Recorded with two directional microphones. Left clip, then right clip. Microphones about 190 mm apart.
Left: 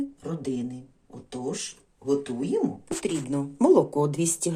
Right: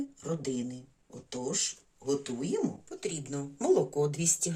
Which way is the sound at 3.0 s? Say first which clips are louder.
Left 7 dB; 30° left (ahead or behind).